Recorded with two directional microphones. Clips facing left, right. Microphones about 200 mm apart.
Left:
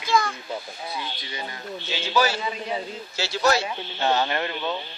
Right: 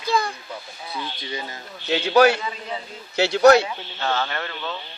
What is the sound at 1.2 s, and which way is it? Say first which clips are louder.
Speech: right 5 dB; 25° right (ahead or behind).